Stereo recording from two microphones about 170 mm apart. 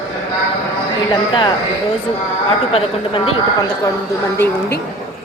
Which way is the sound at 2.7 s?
35° left (ahead or behind).